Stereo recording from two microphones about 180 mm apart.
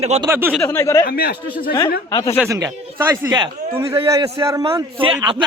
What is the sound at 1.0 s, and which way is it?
Speech, 60° left (ahead or behind).